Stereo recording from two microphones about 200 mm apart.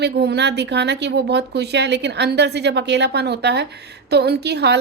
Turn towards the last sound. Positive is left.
turn(degrees=-55)  # may be behind; listen again after turning